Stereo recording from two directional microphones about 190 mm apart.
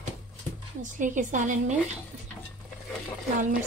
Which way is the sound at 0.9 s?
45° right (ahead or behind).